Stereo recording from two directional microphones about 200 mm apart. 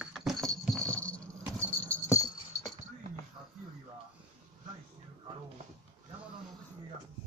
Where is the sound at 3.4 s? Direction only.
20° right (ahead or behind).